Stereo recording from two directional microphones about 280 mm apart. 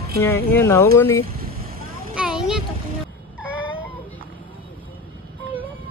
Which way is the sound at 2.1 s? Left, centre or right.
Centre.